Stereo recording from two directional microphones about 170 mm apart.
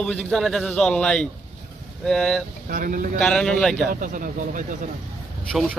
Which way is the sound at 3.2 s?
5° left (ahead or behind).